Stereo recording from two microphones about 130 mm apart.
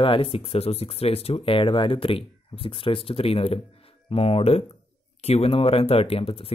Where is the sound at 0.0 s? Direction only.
45° left (ahead or behind).